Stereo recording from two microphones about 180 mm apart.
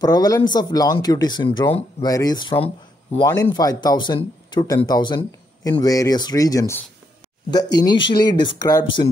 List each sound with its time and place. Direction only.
0.0 s speech: 20° left (ahead or behind)